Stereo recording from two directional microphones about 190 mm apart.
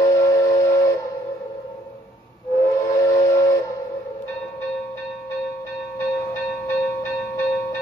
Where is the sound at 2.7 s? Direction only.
15° left (ahead or behind).